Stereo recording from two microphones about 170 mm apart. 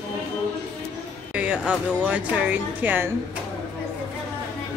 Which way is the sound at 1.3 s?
5° right (ahead or behind).